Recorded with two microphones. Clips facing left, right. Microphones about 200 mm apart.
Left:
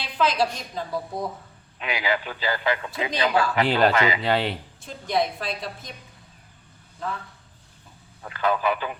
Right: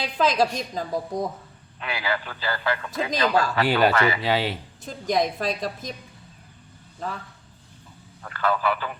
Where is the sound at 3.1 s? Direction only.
40° right (ahead or behind).